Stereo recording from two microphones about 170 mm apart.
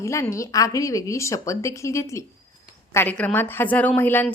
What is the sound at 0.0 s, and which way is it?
A woman's voice, 15° left (ahead or behind).